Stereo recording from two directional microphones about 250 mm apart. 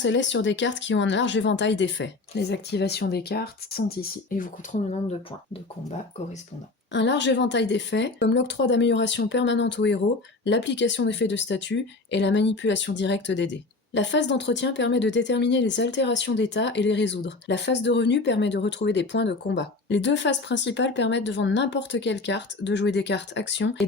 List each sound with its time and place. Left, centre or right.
0.0 s speech: left
6.9 s speech: left